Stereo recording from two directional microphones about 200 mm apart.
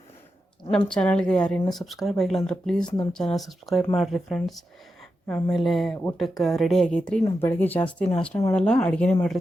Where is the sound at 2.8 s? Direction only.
20° left (ahead or behind).